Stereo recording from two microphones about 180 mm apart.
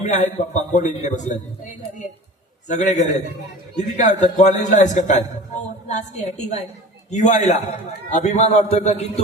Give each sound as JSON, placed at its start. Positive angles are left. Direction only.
{"t": 0.0, "sound": "a man's voice", "side_deg": 40}
{"t": 2.6, "sound": "a man's voice", "side_deg": 40}